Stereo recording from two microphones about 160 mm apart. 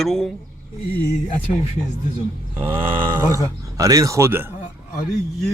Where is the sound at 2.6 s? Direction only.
35° right (ahead or behind).